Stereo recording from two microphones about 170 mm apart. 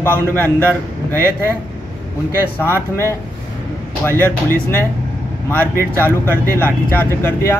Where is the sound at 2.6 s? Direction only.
15° left (ahead or behind).